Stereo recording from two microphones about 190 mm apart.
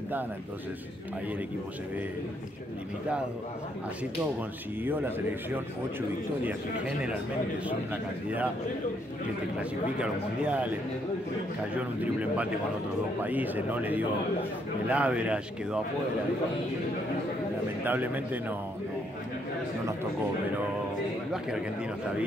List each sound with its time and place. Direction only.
4.8 s speech: 10° right (ahead or behind)
7.6 s speech: 10° right (ahead or behind)
9.6 s speech: 5° right (ahead or behind)
11.7 s speech: 5° right (ahead or behind)
17.8 s speech: 10° right (ahead or behind)